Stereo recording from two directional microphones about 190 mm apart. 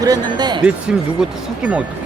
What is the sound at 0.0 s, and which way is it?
Speech, 20° right (ahead or behind).